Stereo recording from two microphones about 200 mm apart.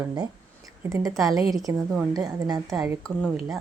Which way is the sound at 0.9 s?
15° right (ahead or behind).